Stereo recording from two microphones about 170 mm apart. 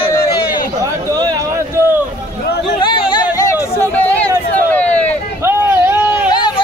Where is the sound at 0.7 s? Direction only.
20° right (ahead or behind).